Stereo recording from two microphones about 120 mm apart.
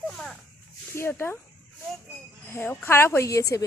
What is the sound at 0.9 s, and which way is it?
Speech, 20° left (ahead or behind).